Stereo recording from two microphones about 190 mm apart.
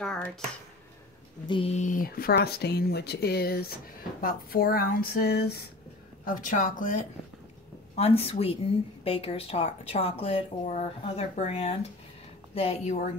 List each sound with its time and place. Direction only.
0.0 s a sound: 5° left (ahead or behind)
1.5 s speech: 30° left (ahead or behind); by 5.6 s 55° left (ahead or behind)
6.2 s speech: 45° left (ahead or behind)
7.9 s speech: 35° left (ahead or behind)